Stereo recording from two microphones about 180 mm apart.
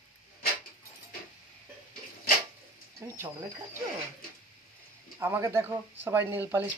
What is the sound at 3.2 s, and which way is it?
Speech, 15° right (ahead or behind).